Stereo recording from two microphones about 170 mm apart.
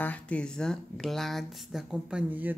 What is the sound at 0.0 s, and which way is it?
Speech, 10° left (ahead or behind).